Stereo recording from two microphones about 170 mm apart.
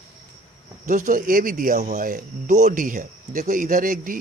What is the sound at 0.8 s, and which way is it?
Speech, 50° right (ahead or behind).